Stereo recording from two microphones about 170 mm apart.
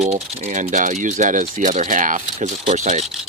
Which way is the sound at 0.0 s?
40° right (ahead or behind).